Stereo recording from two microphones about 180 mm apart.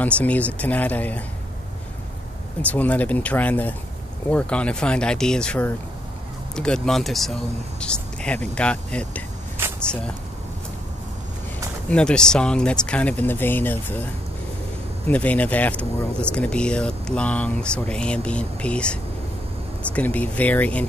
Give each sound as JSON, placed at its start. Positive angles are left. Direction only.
{"t": 0.0, "sound": "speech", "side_deg": 10}
{"t": 2.6, "sound": "speech", "side_deg": 10}
{"t": 11.9, "sound": "speech", "side_deg": 5}
{"t": 15.0, "sound": "speech", "side_deg": 10}